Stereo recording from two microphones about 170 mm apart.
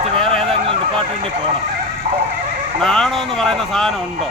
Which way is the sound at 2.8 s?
5° left (ahead or behind).